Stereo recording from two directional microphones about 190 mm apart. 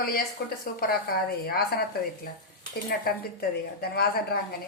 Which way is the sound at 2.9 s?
55° left (ahead or behind).